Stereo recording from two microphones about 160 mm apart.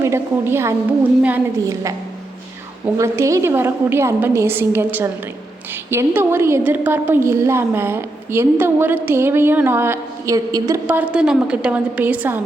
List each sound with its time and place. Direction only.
0.0 s a woman's voice: 15° right (ahead or behind)
10.8 s a woman's voice: 10° right (ahead or behind)